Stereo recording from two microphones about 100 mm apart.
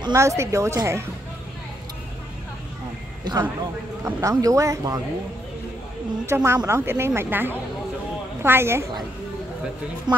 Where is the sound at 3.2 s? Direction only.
45° right (ahead or behind).